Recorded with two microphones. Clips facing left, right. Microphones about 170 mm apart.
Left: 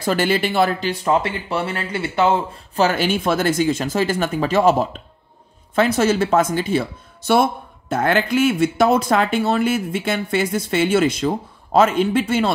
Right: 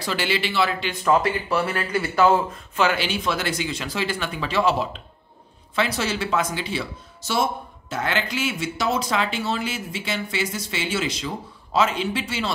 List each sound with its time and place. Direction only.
0.0 s speech: 50° left (ahead or behind)
1.0 s speech: 25° left (ahead or behind)
2.7 s speech: 40° left (ahead or behind)